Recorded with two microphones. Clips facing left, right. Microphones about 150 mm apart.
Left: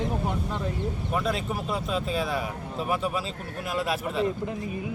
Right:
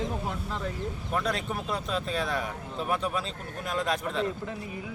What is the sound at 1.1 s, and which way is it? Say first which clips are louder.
Speech: left 1 dB; 5° left (ahead or behind).